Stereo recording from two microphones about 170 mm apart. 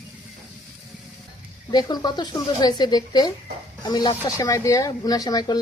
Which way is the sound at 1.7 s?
25° left (ahead or behind).